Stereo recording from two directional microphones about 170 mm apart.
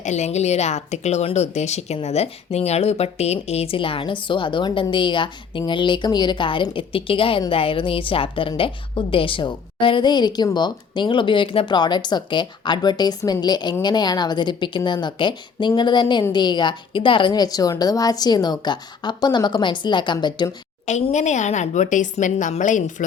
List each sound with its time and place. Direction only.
0.0 s a woman's voice: 40° left (ahead or behind); by 20.6 s 25° left (ahead or behind)
20.8 s speech: 40° left (ahead or behind)